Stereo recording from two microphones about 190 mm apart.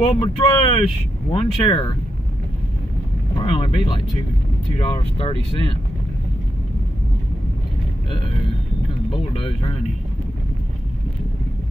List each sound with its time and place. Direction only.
0.0 s speech: 30° left (ahead or behind)
3.4 s speech: 30° left (ahead or behind)
9.1 s speech: 30° left (ahead or behind)